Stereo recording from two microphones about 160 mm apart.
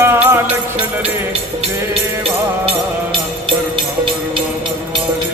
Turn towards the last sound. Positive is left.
turn(degrees=-30)  # may be behind; listen again after turning